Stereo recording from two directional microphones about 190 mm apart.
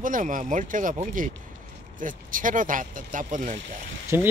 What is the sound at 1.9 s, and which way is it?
Speech, 45° right (ahead or behind).